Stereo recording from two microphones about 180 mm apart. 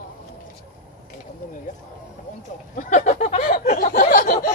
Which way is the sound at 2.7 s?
45° left (ahead or behind).